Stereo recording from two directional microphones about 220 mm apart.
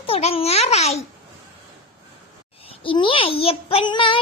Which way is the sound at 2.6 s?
25° left (ahead or behind).